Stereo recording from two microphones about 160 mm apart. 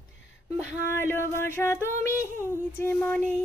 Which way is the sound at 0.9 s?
15° left (ahead or behind).